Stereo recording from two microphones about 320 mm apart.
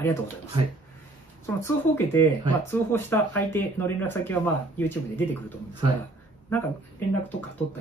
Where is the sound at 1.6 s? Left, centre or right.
Centre.